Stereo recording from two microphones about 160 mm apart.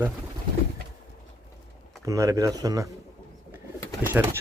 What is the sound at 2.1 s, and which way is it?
Speech, 20° right (ahead or behind).